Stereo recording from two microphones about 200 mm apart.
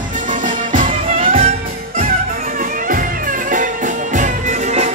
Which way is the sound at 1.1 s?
30° right (ahead or behind).